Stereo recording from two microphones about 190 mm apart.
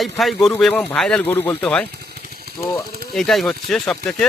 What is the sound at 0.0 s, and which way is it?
Speech, centre (ahead or behind).